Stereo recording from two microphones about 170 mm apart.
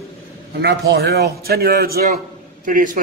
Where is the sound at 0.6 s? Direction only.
75° right (ahead or behind).